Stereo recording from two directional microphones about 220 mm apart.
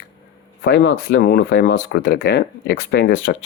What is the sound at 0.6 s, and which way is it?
Speech, 50° left (ahead or behind).